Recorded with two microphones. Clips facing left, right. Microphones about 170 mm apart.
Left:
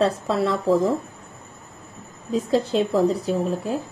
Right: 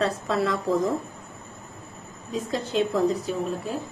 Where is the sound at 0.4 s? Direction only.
30° left (ahead or behind).